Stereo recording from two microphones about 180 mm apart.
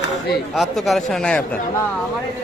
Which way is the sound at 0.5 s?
Centre (ahead or behind).